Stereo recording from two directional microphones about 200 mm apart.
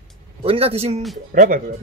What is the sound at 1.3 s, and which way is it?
Speech, 45° right (ahead or behind).